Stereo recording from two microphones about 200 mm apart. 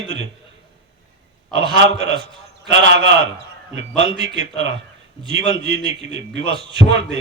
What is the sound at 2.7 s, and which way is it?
A man's voice, 65° right (ahead or behind).